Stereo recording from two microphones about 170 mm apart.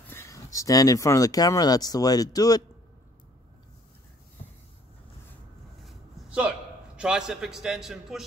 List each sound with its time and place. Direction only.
0.1 s speech: 15° left (ahead or behind)
5.9 s a sound: 5° right (ahead or behind)
7.0 s a man's voice: 5° right (ahead or behind)